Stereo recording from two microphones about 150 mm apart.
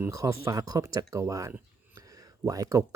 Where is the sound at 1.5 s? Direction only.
20° right (ahead or behind).